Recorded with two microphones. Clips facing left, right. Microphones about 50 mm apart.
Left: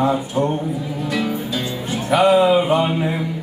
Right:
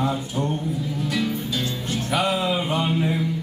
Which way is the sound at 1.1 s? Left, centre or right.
Centre.